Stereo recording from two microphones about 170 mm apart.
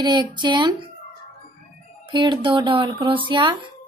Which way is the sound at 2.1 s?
30° right (ahead or behind).